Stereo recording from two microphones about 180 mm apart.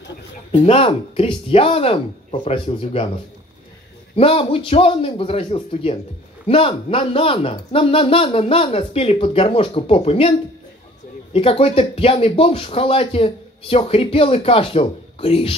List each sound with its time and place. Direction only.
0.5 s speech: 30° left (ahead or behind)
4.1 s speech: 30° left (ahead or behind)
11.3 s speech: 30° left (ahead or behind)